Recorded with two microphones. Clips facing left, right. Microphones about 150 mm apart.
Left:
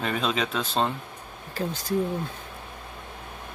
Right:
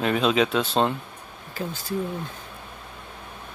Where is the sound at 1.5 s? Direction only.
40° left (ahead or behind).